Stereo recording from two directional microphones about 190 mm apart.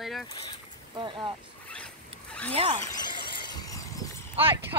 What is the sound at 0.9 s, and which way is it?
Speech, 25° right (ahead or behind).